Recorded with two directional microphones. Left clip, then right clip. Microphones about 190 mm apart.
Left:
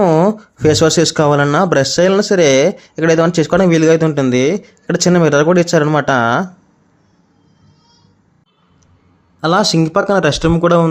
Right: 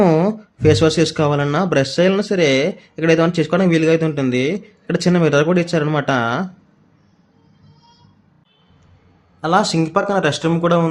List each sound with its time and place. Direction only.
0.0 s speech: 20° left (ahead or behind)
9.4 s speech: 30° left (ahead or behind)